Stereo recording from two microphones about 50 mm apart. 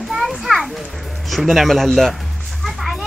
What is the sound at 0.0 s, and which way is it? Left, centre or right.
Children playing, centre.